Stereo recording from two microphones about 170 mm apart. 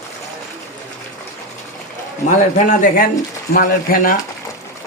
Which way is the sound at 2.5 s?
50° left (ahead or behind).